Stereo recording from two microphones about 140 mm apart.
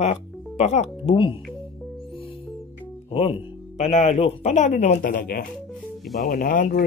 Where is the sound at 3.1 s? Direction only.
45° left (ahead or behind); by 6.8 s 80° left.